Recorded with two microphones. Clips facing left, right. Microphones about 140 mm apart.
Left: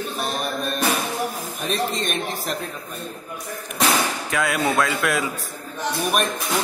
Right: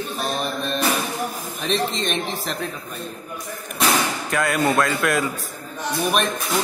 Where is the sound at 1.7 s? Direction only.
50° left (ahead or behind).